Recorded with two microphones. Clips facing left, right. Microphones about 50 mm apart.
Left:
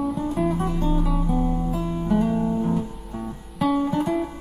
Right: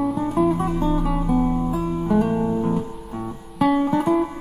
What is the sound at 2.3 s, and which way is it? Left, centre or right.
Guitar, right.